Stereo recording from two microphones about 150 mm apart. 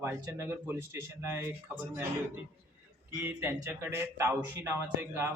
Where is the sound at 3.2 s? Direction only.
15° right (ahead or behind).